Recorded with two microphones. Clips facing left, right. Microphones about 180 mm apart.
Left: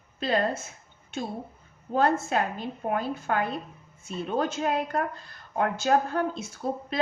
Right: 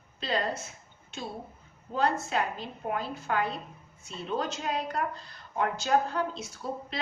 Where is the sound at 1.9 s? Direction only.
50° left (ahead or behind).